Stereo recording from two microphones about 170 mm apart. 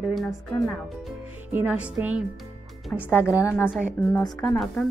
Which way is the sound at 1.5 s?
10° right (ahead or behind).